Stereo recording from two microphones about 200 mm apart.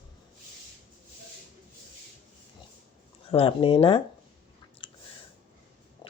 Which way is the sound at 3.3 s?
25° left (ahead or behind).